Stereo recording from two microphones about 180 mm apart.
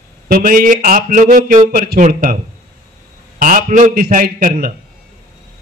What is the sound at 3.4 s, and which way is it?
Speech, 50° right (ahead or behind).